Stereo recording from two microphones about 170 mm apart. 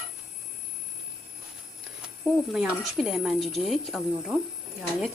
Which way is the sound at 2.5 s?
5° right (ahead or behind).